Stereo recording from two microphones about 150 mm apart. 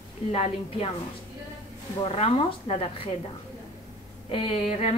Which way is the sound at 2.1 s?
40° left (ahead or behind).